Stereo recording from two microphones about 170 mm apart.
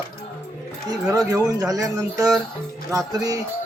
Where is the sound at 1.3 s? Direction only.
20° right (ahead or behind).